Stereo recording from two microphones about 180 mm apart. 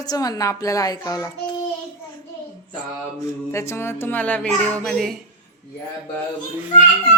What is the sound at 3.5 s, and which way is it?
Speech, 15° left (ahead or behind).